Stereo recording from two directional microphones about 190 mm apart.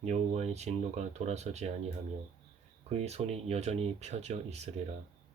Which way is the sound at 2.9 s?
35° right (ahead or behind).